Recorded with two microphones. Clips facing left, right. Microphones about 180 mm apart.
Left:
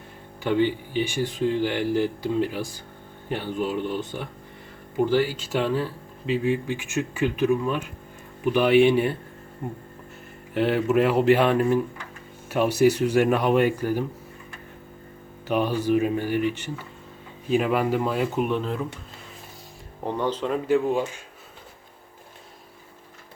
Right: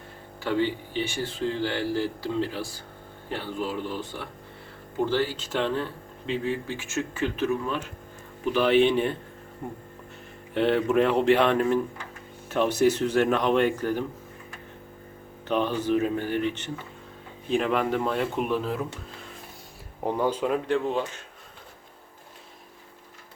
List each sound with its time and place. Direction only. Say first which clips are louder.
0.4 s speech: left 3 dB; 15° left (ahead or behind)
10.5 s speech: left 1 dB; 5° left (ahead or behind)
15.4 s speech: left 2 dB; 10° left (ahead or behind)
20.1 s speech: right 1 dB; 10° right (ahead or behind)
20.7 s speech: left 4 dB; 10° left (ahead or behind)